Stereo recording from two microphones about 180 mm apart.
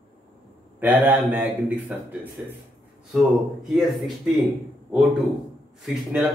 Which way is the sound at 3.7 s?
Centre (ahead or behind).